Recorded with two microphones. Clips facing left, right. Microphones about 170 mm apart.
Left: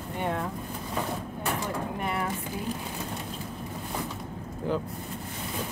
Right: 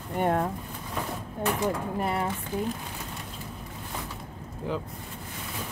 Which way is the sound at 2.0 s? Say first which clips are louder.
Right 3 dB; 30° right (ahead or behind).